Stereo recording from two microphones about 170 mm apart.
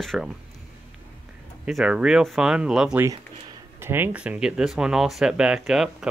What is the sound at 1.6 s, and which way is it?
Speech, 5° right (ahead or behind).